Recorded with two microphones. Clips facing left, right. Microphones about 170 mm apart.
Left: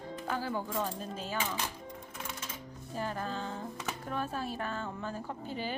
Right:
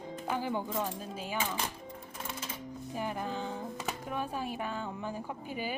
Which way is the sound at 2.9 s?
15° right (ahead or behind).